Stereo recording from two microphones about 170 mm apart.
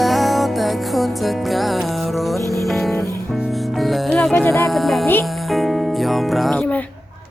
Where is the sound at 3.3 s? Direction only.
Centre (ahead or behind).